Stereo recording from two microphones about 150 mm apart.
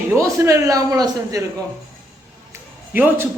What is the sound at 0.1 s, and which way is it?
A man's voice, 20° right (ahead or behind).